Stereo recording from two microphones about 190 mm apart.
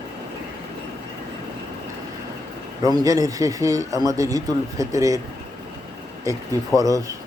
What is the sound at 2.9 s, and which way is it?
Speech, 20° right (ahead or behind).